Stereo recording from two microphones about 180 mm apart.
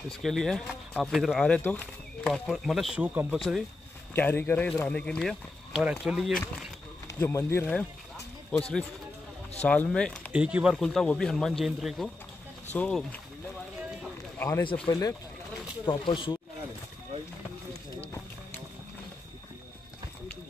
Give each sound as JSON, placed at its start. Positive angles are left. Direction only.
{"t": 0.1, "sound": "speech", "side_deg": 0}
{"t": 4.1, "sound": "speech", "side_deg": 10}
{"t": 7.2, "sound": "speech", "side_deg": 15}
{"t": 10.3, "sound": "speech", "side_deg": -5}
{"t": 14.9, "sound": "speech", "side_deg": 20}